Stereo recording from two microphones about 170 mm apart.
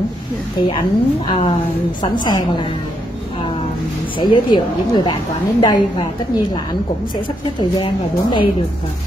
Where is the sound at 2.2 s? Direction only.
25° left (ahead or behind).